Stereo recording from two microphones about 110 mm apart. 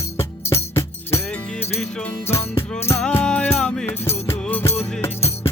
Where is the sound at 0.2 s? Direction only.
25° left (ahead or behind).